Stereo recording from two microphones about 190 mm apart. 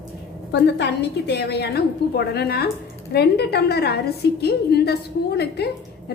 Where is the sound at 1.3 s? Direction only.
60° left (ahead or behind).